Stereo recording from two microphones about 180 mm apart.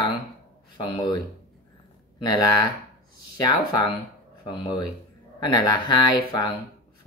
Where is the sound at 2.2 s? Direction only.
20° left (ahead or behind).